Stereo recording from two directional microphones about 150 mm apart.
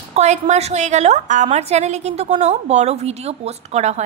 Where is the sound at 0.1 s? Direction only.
50° right (ahead or behind).